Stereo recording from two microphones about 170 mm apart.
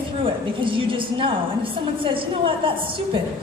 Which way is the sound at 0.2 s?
30° right (ahead or behind).